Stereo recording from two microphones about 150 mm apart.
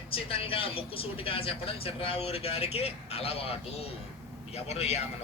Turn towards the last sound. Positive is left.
turn(degrees=45)  # may be behind; listen again after turning